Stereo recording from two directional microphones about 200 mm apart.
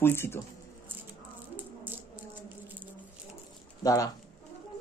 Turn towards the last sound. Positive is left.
turn(degrees=20)  # may be behind; listen again after turning